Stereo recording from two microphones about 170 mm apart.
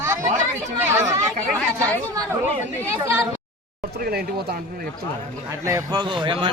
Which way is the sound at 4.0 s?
65° right (ahead or behind).